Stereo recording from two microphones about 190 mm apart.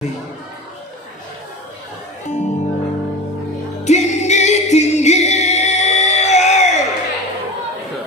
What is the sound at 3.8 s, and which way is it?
Singing, 35° left (ahead or behind).